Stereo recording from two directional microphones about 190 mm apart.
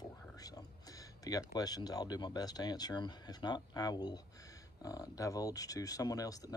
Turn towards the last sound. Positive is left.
turn(degrees=20)  # may be behind; listen again after turning